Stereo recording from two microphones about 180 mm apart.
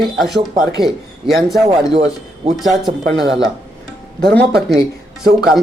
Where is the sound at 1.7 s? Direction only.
30° right (ahead or behind).